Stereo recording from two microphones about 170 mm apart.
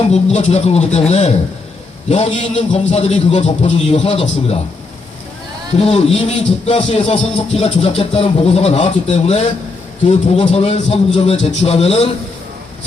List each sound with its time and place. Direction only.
0.1 s speech: 40° left (ahead or behind)
5.7 s speech: 35° left (ahead or behind)